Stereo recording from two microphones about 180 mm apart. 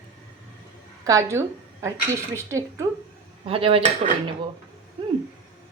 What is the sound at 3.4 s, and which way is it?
Speech, 30° right (ahead or behind).